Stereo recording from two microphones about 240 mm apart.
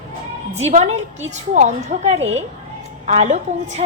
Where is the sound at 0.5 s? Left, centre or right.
Right.